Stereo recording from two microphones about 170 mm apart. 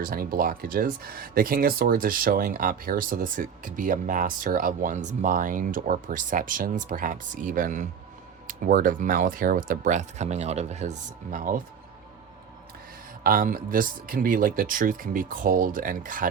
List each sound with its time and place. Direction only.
0.0 s speech: 55° right (ahead or behind)
13.2 s speech: 55° right (ahead or behind)